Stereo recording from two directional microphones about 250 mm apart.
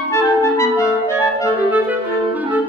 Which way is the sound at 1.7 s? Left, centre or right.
Centre.